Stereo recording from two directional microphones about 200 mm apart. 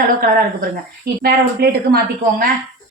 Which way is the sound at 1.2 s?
50° right (ahead or behind).